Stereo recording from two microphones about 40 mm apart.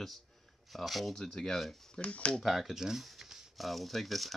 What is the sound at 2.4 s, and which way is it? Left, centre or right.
Speech, centre.